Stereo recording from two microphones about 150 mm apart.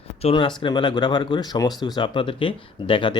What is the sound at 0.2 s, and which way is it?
Speech, 35° left (ahead or behind).